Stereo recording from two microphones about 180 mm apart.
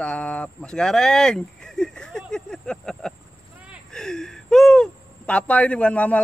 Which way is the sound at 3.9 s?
5° left (ahead or behind).